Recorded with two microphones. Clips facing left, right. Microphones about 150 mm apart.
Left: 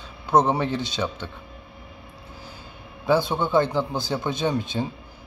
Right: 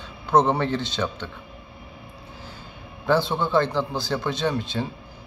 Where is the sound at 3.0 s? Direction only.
15° left (ahead or behind).